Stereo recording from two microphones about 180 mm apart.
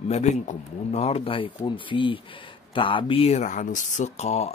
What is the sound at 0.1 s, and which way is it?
Speech, 40° left (ahead or behind).